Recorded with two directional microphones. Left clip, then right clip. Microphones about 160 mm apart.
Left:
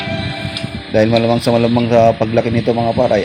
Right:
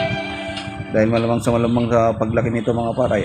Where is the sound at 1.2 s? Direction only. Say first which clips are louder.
Left 5 dB; 15° left (ahead or behind).